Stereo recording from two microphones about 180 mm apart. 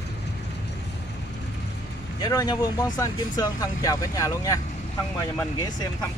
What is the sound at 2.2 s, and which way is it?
Speech, 20° left (ahead or behind).